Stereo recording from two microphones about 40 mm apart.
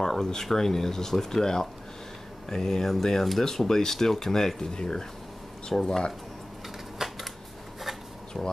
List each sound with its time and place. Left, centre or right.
0.0 s speech: centre
7.0 s a sound: centre
8.3 s speech: centre